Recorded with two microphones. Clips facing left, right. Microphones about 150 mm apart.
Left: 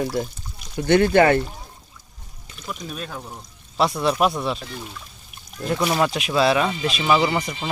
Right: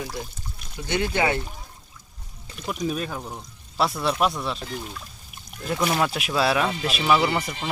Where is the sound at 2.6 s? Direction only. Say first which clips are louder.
Right 5 dB; 5° right (ahead or behind).